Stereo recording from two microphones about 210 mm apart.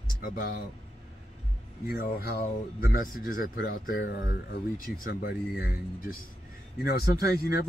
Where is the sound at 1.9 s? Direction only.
50° left (ahead or behind).